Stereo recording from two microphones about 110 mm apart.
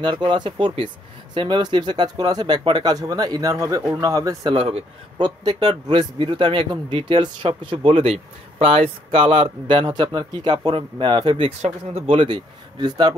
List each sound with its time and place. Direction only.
0.0 s speech: 45° right (ahead or behind); by 4.5 s 30° right (ahead or behind)
4.5 s a man's voice: 60° right (ahead or behind)
5.4 s speech: 40° right (ahead or behind)